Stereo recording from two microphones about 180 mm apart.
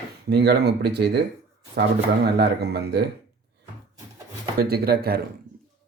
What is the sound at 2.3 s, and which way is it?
Speech, 65° right (ahead or behind).